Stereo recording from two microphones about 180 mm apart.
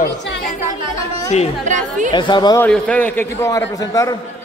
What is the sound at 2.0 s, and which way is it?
Speech, 25° left (ahead or behind).